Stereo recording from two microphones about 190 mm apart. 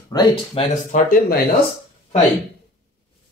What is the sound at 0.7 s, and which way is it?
Speech, 45° left (ahead or behind).